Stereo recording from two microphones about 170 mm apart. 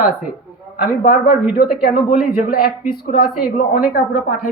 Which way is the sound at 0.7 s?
60° left (ahead or behind).